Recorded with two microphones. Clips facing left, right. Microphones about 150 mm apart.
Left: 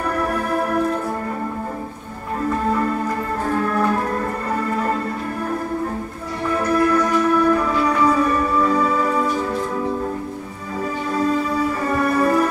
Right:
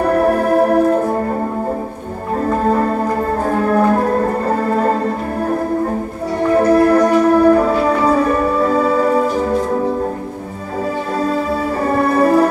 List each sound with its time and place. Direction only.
0.0 s music: 45° right (ahead or behind)
2.4 s music: 45° right (ahead or behind)
6.5 s music: 45° right (ahead or behind)
11.1 s music: 50° right (ahead or behind)